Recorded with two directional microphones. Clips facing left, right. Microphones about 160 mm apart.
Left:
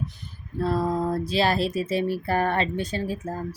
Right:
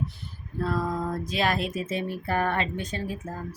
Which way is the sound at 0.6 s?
30° left (ahead or behind).